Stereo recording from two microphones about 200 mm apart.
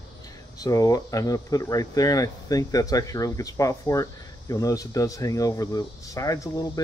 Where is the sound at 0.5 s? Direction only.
15° left (ahead or behind).